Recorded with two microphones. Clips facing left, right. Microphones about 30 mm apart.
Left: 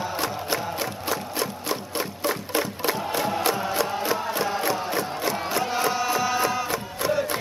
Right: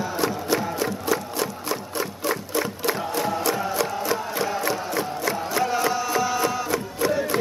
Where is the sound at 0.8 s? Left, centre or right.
Left.